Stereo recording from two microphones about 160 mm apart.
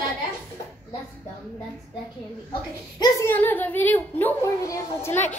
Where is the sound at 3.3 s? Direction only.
10° left (ahead or behind).